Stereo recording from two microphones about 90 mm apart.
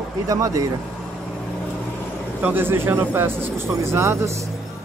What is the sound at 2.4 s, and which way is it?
Speech, 25° right (ahead or behind).